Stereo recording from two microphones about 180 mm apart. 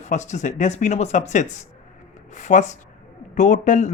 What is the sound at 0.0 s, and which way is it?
Speech, 40° left (ahead or behind).